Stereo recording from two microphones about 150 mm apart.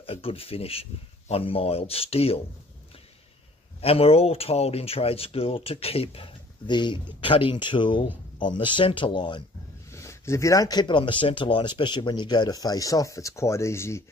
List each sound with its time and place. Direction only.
0.0 s speech: 40° left (ahead or behind)
3.8 s speech: 40° left (ahead or behind)
9.8 s speech: 20° left (ahead or behind)